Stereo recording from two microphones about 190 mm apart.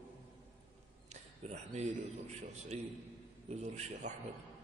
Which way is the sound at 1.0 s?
35° right (ahead or behind).